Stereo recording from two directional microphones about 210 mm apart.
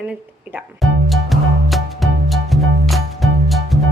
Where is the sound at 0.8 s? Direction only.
Centre (ahead or behind).